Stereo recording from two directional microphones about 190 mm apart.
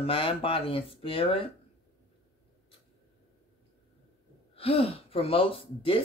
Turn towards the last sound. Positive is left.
turn(degrees=30)  # may be behind; listen again after turning